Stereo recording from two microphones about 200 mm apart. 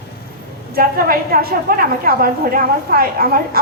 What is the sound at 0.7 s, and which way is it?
A woman's voice, 45° right (ahead or behind).